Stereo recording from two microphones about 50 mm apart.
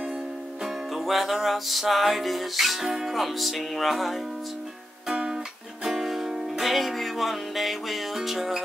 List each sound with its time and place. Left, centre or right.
0.9 s music: centre
5.1 s music: centre
5.9 s music: centre